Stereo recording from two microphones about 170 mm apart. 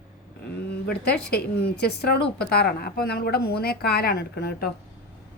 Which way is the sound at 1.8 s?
70° left (ahead or behind).